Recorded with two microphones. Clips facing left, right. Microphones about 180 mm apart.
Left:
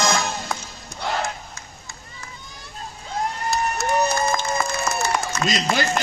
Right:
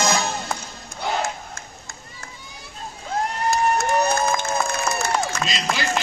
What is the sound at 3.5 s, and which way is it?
Crowd, 55° right (ahead or behind).